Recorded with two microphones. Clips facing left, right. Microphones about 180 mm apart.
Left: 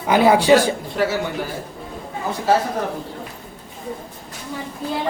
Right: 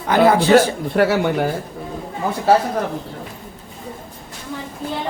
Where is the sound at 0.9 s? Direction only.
65° right (ahead or behind).